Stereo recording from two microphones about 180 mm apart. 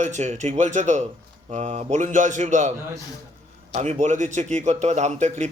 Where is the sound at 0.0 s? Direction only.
40° right (ahead or behind).